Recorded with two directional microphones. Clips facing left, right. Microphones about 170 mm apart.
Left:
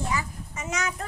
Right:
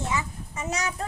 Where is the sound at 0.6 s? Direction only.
35° right (ahead or behind).